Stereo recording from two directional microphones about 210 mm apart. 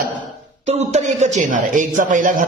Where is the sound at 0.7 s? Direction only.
30° right (ahead or behind).